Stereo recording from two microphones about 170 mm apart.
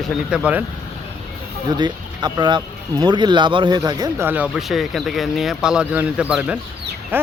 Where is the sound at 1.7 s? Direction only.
25° right (ahead or behind).